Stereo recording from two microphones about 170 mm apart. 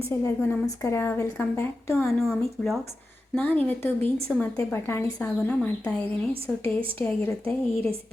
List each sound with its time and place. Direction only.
0.1 s a woman's voice: 10° left (ahead or behind)
2.0 s a woman's voice: centre (ahead or behind)